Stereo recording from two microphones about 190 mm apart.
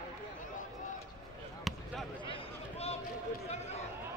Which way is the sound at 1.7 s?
Centre (ahead or behind).